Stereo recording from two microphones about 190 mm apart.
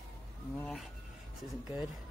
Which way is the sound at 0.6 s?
Centre (ahead or behind).